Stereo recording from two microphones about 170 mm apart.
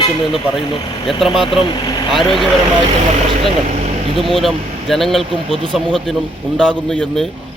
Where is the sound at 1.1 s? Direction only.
Centre (ahead or behind).